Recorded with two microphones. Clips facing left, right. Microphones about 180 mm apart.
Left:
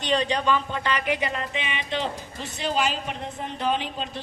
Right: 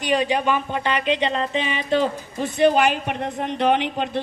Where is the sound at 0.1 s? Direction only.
15° right (ahead or behind).